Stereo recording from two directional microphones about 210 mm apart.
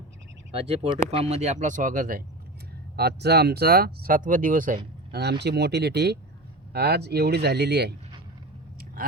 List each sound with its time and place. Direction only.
0.5 s speech: 25° right (ahead or behind)
5.1 s speech: 50° right (ahead or behind)